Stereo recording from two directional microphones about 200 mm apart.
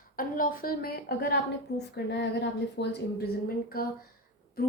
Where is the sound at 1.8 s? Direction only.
60° left (ahead or behind).